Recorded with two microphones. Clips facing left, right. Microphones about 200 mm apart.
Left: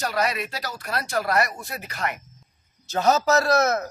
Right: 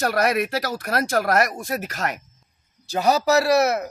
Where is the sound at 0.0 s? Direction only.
60° right (ahead or behind).